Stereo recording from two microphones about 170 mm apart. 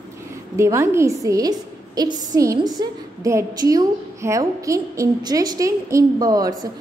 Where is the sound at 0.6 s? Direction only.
15° right (ahead or behind).